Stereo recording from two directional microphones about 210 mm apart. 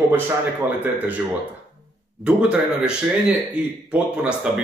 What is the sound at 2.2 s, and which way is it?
Speech, 5° right (ahead or behind).